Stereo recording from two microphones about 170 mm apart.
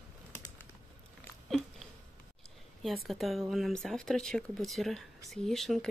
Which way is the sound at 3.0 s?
Centre (ahead or behind).